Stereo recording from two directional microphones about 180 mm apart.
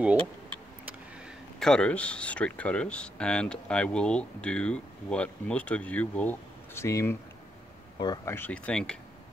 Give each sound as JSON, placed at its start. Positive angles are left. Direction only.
{"t": 1.6, "sound": "speech", "side_deg": 5}
{"t": 8.4, "sound": "speech", "side_deg": 5}